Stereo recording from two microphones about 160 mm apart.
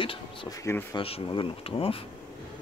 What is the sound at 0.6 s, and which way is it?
Speech, 15° left (ahead or behind).